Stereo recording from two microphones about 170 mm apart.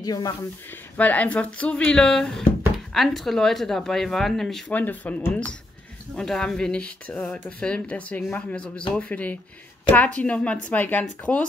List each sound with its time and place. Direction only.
0.0 s speech: 20° left (ahead or behind)
0.9 s speech: 10° left (ahead or behind)